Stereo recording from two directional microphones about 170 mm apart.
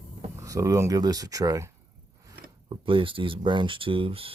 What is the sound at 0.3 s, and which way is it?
Speech, 20° right (ahead or behind).